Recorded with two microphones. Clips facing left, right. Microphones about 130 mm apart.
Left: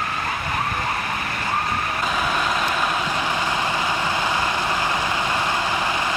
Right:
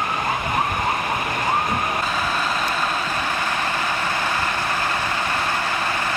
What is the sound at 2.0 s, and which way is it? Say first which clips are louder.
Vehicle: left 1 dB; 10° left (ahead or behind).